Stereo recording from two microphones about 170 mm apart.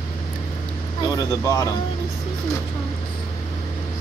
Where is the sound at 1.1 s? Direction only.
20° left (ahead or behind).